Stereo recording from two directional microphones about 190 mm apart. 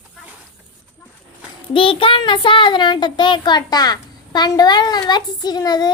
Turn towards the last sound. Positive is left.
turn(degrees=20)  # may be behind; listen again after turning